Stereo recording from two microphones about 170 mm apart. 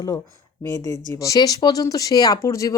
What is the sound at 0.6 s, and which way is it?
Speech, 20° left (ahead or behind).